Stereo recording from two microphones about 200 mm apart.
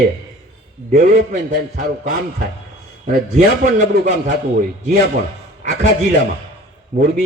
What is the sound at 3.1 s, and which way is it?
A man's voice, 40° right (ahead or behind).